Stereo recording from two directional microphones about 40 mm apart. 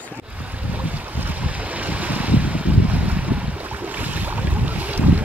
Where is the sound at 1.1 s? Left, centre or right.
Right.